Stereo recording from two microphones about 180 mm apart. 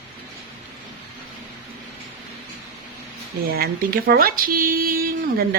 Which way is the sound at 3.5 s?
55° right (ahead or behind).